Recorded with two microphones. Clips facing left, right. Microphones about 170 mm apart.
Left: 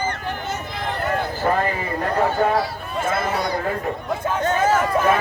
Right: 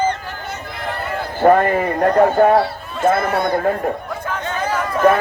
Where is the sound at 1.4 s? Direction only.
55° right (ahead or behind).